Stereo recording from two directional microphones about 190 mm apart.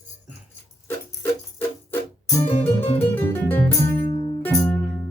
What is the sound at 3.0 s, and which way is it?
Music, 10° left (ahead or behind).